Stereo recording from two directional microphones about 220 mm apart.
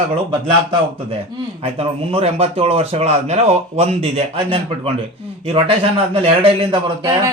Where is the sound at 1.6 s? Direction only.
25° right (ahead or behind).